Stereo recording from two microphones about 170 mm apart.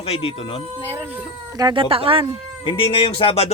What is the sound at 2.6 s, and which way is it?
Speech, 30° left (ahead or behind).